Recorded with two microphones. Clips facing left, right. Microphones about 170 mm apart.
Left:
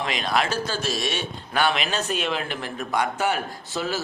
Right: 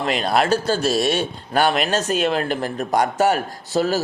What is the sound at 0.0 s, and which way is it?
Speech, 40° right (ahead or behind).